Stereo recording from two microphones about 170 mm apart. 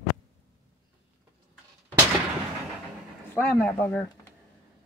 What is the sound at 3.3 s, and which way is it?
Speech, 10° left (ahead or behind).